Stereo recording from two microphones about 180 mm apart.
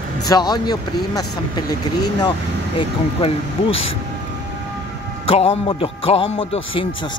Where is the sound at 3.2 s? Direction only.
30° left (ahead or behind).